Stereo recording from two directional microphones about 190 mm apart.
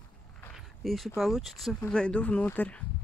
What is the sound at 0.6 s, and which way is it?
Speech, centre (ahead or behind).